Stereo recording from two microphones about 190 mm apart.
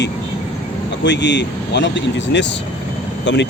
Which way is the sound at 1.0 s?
65° left (ahead or behind).